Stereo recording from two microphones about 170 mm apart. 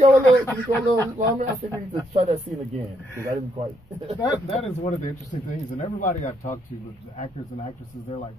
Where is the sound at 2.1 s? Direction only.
40° right (ahead or behind).